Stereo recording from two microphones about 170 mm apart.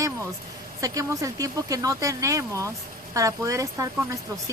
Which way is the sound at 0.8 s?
20° right (ahead or behind).